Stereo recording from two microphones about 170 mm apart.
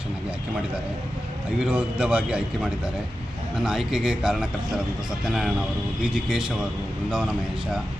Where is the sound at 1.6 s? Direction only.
5° right (ahead or behind).